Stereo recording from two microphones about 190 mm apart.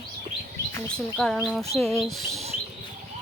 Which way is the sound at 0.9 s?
5° left (ahead or behind).